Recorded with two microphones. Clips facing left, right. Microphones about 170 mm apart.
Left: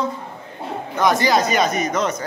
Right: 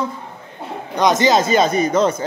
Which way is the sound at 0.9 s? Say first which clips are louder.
Right 3 dB; 20° right (ahead or behind).